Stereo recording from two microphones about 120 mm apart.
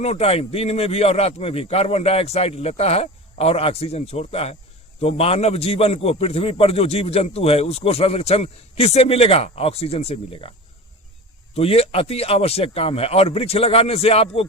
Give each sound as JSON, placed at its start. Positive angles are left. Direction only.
{"t": 0.0, "sound": "a man's voice", "side_deg": 60}
{"t": 11.5, "sound": "a man's voice", "side_deg": 55}